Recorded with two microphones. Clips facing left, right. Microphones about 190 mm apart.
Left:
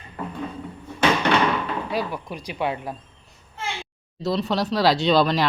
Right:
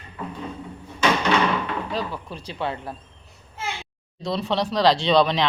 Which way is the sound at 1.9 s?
10° left (ahead or behind).